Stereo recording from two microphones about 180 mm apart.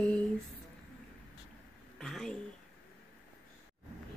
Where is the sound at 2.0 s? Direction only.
Centre (ahead or behind).